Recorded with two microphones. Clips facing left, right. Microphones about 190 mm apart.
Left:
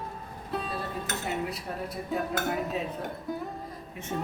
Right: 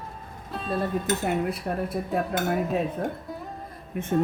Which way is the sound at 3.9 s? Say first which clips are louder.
Right 14 dB; 55° right (ahead or behind).